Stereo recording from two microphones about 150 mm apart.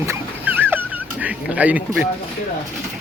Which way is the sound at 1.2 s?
10° right (ahead or behind).